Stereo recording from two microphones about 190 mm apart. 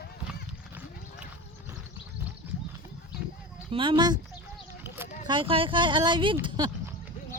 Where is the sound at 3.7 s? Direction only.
25° right (ahead or behind).